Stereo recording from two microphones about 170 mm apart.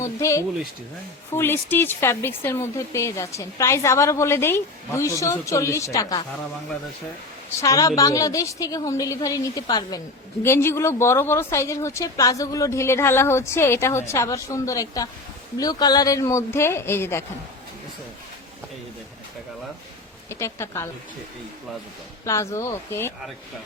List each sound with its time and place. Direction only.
0.0 s a woman's voice: 15° left (ahead or behind)
7.6 s a woman's voice: 20° left (ahead or behind)
20.3 s speech: 15° left (ahead or behind)
22.2 s speech: 20° left (ahead or behind)